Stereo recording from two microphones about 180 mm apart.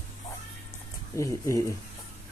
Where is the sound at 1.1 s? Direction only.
15° left (ahead or behind).